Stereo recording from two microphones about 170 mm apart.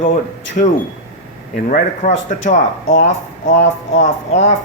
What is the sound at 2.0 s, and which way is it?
Speech, 45° left (ahead or behind).